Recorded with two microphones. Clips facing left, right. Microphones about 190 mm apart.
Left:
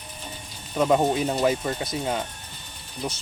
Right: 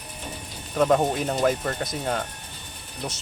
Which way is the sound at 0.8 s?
5° left (ahead or behind).